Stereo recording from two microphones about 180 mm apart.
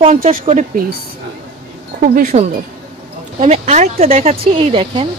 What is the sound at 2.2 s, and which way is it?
Speech, 45° right (ahead or behind).